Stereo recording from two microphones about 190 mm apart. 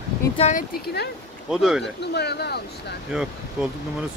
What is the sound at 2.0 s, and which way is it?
Speech, 60° left (ahead or behind).